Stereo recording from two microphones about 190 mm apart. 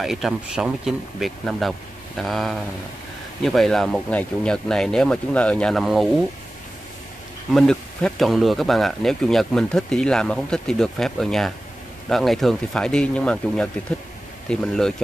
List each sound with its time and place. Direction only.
0.0 s speech: centre (ahead or behind)
7.5 s speech: centre (ahead or behind)